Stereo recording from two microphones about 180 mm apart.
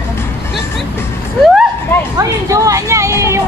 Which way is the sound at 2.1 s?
20° right (ahead or behind).